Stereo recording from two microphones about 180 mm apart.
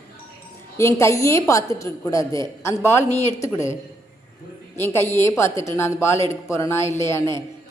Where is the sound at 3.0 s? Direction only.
40° left (ahead or behind).